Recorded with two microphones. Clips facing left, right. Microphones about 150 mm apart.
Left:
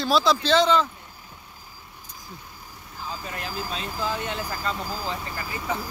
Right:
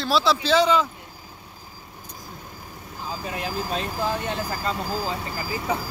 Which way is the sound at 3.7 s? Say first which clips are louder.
Right 3 dB; 45° right (ahead or behind).